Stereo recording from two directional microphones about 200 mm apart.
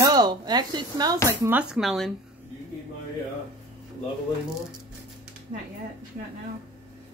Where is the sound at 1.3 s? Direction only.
10° right (ahead or behind).